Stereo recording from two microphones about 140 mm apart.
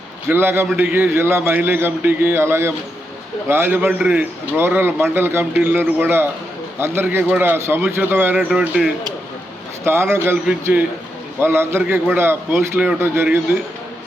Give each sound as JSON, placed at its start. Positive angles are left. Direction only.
{"t": 0.3, "sound": "a man's voice", "side_deg": -15}
{"t": 9.8, "sound": "a man's voice", "side_deg": -20}